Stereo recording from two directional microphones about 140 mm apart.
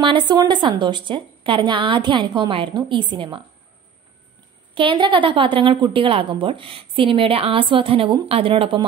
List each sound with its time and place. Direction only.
0.0 s a woman's voice: 35° right (ahead or behind)
4.7 s a woman's voice: 35° right (ahead or behind)